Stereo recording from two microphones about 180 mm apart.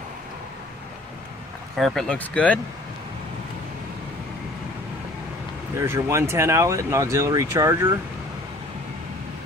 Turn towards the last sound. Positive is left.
turn(degrees=-15)  # may be behind; listen again after turning